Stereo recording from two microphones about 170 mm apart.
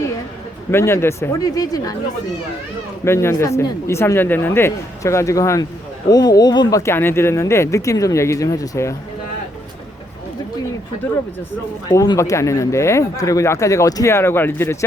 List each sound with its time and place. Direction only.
0.7 s speech: 15° left (ahead or behind)
3.0 s speech: 15° left (ahead or behind)
11.9 s speech: 20° left (ahead or behind)